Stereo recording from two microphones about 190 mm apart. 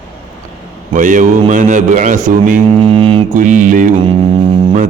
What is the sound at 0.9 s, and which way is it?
Speech, 40° right (ahead or behind).